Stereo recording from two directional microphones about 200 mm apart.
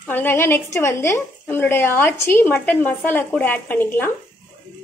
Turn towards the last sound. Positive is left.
turn(degrees=10)  # may be behind; listen again after turning